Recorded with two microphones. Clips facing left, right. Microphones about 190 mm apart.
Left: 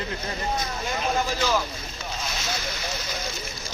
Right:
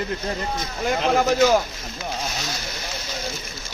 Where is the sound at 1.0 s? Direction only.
75° right (ahead or behind).